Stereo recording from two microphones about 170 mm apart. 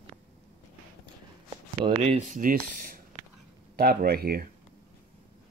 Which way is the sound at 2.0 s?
40° right (ahead or behind).